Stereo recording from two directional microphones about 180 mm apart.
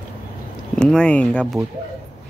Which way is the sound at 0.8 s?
5° left (ahead or behind).